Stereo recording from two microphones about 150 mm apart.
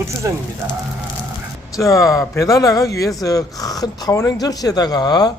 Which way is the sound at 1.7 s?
20° left (ahead or behind).